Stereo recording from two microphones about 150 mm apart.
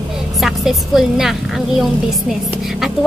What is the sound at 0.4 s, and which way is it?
A woman's voice, centre (ahead or behind).